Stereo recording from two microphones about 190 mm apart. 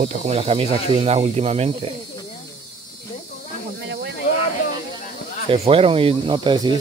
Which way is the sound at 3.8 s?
65° right (ahead or behind).